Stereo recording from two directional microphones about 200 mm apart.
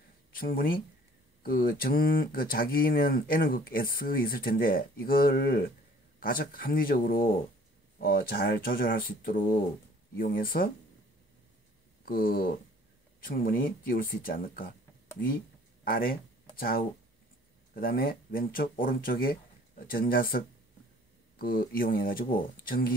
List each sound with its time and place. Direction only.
0.3 s speech: 45° left (ahead or behind)
12.0 s speech: 45° left (ahead or behind)
15.8 s speech: 45° left (ahead or behind)